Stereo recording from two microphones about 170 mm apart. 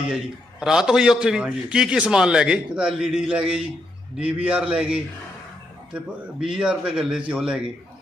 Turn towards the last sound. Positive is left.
turn(degrees=-5)  # may be behind; listen again after turning